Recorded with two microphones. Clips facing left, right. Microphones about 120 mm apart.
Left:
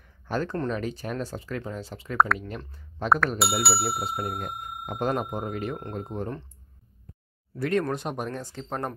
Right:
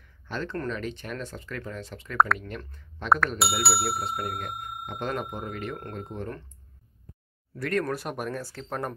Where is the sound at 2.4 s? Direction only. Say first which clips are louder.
Left 1 dB; 30° left (ahead or behind).